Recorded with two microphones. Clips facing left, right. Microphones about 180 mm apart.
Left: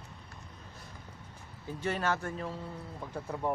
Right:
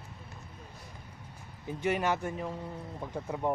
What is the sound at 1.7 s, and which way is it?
Speech, 15° right (ahead or behind).